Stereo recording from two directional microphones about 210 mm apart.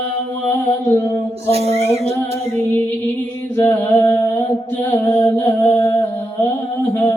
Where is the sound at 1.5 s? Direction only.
30° right (ahead or behind).